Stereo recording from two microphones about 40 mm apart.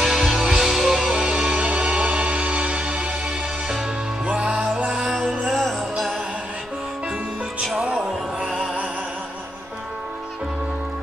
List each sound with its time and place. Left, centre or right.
0.0 s music: centre
1.1 s music: centre
1.7 s music: right
4.3 s music: right
4.8 s music: centre
5.5 s music: centre
7.8 s music: right